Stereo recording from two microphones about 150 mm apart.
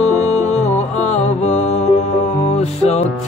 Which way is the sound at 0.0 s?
45° left (ahead or behind).